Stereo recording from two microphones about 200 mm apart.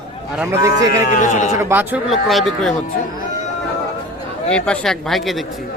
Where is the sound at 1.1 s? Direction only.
40° left (ahead or behind).